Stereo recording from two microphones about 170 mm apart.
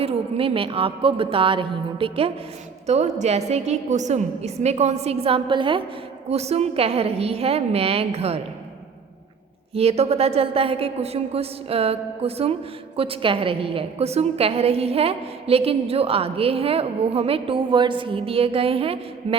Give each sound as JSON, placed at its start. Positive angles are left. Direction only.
{"t": 0.0, "sound": "a woman's voice", "side_deg": -35}
{"t": 9.7, "sound": "a woman's voice", "side_deg": -40}